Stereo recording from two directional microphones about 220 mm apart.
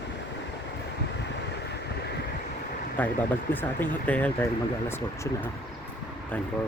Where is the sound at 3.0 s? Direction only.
10° left (ahead or behind).